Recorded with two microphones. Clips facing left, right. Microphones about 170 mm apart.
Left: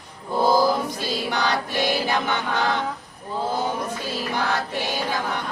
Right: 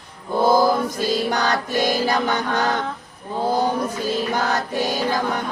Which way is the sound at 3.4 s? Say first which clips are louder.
Right 5 dB; 40° right (ahead or behind).